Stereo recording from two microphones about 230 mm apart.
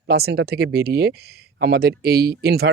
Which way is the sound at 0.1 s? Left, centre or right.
Right.